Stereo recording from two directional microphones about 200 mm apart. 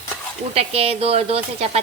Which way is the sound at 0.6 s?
30° right (ahead or behind).